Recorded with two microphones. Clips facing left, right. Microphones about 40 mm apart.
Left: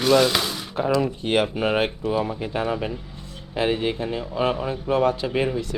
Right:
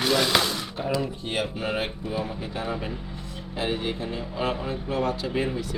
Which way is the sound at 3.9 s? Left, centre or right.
Left.